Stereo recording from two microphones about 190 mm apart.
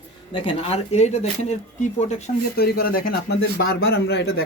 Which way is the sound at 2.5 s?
55° left (ahead or behind).